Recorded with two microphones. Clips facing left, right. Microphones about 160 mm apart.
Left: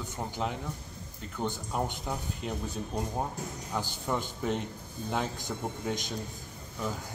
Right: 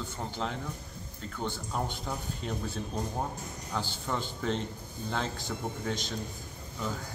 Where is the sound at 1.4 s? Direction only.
10° left (ahead or behind).